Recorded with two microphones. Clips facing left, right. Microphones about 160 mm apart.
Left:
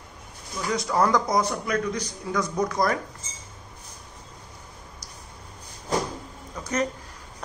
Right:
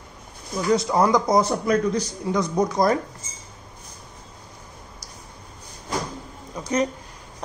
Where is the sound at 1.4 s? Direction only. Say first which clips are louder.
Right 5 dB; 30° right (ahead or behind).